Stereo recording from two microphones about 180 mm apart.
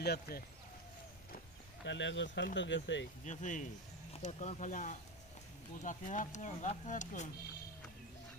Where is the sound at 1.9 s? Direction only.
80° left.